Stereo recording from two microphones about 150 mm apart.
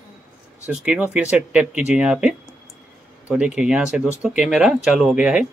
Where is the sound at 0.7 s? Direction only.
5° right (ahead or behind).